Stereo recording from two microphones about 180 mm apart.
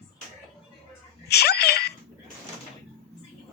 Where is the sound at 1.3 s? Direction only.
65° left (ahead or behind).